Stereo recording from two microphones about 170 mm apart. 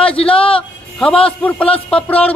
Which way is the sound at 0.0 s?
35° left (ahead or behind).